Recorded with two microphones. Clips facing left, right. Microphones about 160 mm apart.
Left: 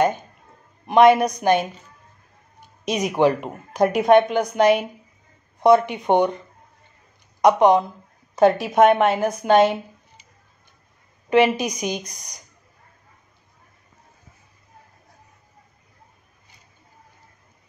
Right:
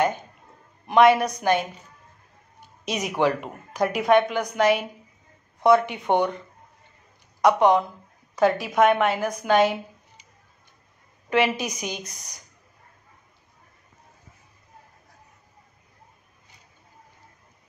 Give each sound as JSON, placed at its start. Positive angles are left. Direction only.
{"t": 0.8, "sound": "speech", "side_deg": 20}
{"t": 2.8, "sound": "speech", "side_deg": 15}
{"t": 7.4, "sound": "speech", "side_deg": 20}
{"t": 11.2, "sound": "a woman's voice", "side_deg": 20}